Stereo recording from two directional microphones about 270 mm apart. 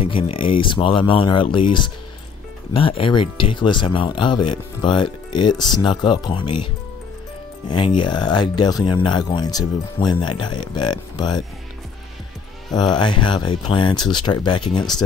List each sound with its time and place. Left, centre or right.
0.0 s speech: left
12.7 s speech: centre